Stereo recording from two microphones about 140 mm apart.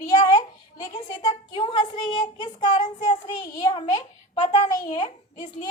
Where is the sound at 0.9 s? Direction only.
30° left (ahead or behind).